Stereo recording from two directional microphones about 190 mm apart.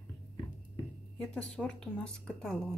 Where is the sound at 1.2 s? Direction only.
5° left (ahead or behind).